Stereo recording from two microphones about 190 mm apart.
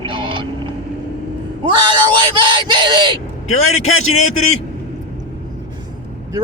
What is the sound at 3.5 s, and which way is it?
Speech, 35° left (ahead or behind).